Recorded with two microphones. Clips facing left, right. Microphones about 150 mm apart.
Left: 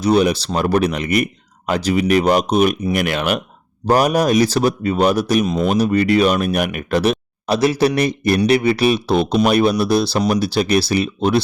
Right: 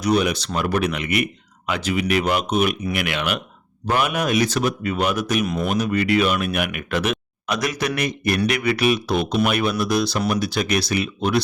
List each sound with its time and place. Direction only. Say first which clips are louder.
0.0 s a man's voice: left 5 dB; 30° left (ahead or behind)